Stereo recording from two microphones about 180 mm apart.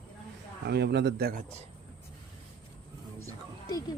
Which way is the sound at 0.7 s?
65° right (ahead or behind).